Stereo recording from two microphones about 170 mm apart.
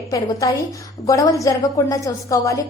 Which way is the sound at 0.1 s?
20° left (ahead or behind).